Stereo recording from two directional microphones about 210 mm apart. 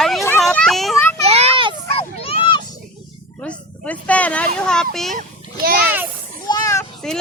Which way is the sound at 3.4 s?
5° left (ahead or behind).